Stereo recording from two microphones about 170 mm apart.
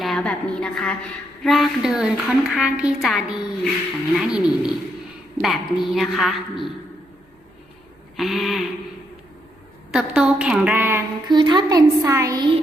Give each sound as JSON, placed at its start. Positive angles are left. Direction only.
{"t": 0.0, "sound": "a woman's voice", "side_deg": 5}
{"t": 8.1, "sound": "a woman's voice", "side_deg": 0}
{"t": 9.9, "sound": "a woman's voice", "side_deg": -5}
{"t": 11.3, "sound": "a woman's voice", "side_deg": -25}